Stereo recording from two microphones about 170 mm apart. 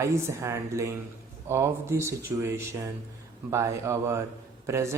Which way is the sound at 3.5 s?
15° right (ahead or behind).